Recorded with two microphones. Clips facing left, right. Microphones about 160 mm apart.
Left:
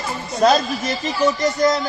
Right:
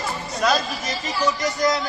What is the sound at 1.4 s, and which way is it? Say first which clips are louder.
Speech: left 3 dB; centre (ahead or behind).